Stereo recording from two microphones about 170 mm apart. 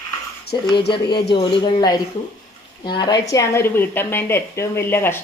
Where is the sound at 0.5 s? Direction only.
25° left (ahead or behind).